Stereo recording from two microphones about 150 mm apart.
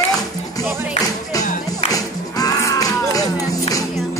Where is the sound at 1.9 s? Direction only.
25° left (ahead or behind).